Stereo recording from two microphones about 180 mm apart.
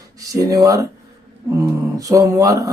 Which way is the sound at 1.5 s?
15° right (ahead or behind).